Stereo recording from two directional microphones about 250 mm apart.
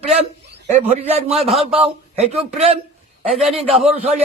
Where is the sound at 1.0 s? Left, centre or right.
Right.